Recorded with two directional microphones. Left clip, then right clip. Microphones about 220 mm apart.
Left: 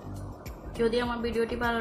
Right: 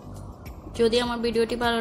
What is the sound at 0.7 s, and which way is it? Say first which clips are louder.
A woman's voice: right 5 dB; 30° right (ahead or behind).